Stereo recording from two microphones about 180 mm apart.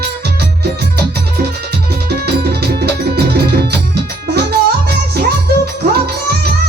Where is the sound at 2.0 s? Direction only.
60° right (ahead or behind).